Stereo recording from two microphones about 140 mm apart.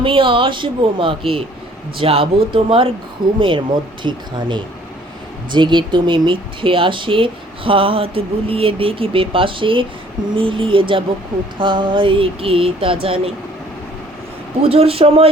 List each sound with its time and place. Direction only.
0.0 s speech: 40° right (ahead or behind)
14.6 s speech: 45° right (ahead or behind)